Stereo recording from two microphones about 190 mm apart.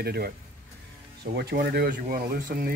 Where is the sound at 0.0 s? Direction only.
55° right (ahead or behind).